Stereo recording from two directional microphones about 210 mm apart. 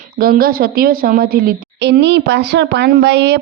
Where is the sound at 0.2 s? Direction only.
45° right (ahead or behind).